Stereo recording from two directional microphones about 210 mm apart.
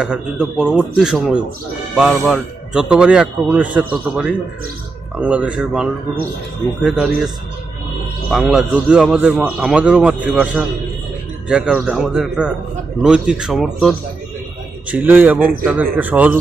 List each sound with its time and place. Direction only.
0.0 s speech: 5° right (ahead or behind)
8.3 s speech: centre (ahead or behind)